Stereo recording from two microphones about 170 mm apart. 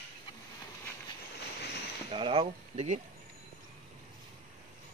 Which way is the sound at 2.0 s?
30° right (ahead or behind).